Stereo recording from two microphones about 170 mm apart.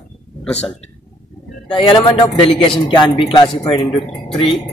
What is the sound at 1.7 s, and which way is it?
A man's voice, 30° left (ahead or behind).